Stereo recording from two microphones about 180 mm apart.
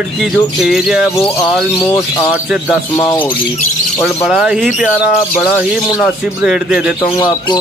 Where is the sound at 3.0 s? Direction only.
25° left (ahead or behind).